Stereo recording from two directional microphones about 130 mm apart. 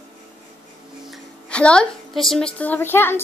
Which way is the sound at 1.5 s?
10° left (ahead or behind).